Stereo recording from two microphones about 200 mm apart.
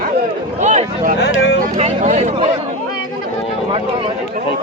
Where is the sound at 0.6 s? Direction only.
35° right (ahead or behind).